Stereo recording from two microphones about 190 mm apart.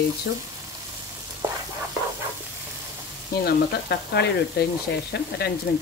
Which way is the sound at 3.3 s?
55° left (ahead or behind).